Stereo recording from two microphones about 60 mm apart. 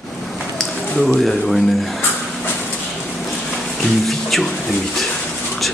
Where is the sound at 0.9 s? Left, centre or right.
Centre.